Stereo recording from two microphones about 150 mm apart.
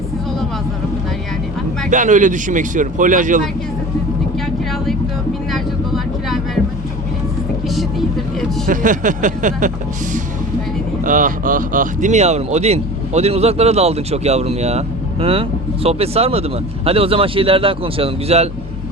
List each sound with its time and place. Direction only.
1.9 s speech: 55° right (ahead or behind)
5.5 s vehicle: centre (ahead or behind)
7.8 s vehicle: centre (ahead or behind)
8.6 s speech: 60° right (ahead or behind)
11.0 s speech: 60° right (ahead or behind); by 18.4 s 40° right (ahead or behind)